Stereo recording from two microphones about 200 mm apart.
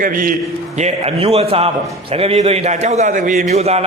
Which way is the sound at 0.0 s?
45° right (ahead or behind).